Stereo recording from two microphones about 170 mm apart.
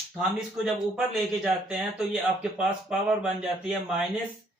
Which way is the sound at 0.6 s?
5° right (ahead or behind).